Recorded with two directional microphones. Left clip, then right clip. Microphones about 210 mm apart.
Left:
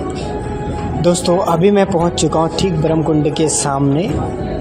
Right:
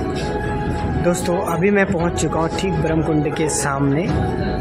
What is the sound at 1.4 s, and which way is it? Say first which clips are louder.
Speech: left 4 dB; 20° left (ahead or behind).